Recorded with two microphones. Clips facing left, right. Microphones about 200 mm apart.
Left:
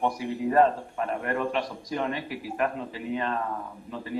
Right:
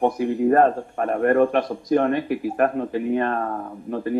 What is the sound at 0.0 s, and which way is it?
Speech, 50° right (ahead or behind).